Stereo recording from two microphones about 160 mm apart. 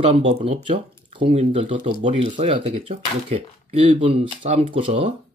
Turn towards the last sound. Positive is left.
turn(degrees=-35)  # may be behind; listen again after turning